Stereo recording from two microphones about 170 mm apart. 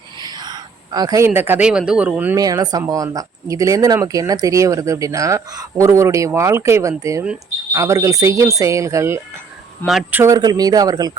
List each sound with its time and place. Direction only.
0.2 s speech: 25° right (ahead or behind)
2.3 s speech: 20° right (ahead or behind)
9.8 s speech: centre (ahead or behind)
10.2 s speech: 20° right (ahead or behind)